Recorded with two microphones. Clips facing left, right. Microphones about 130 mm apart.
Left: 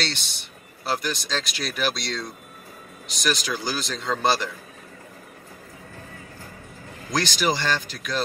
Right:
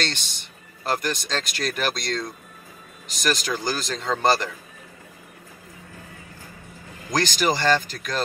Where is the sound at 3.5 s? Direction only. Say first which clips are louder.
Right 2 dB; 5° left (ahead or behind).